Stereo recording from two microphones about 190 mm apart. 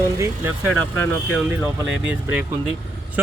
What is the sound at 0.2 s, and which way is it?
Speech, 10° right (ahead or behind).